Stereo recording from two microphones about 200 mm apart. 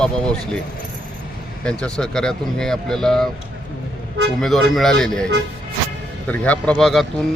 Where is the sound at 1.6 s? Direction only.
5° left (ahead or behind).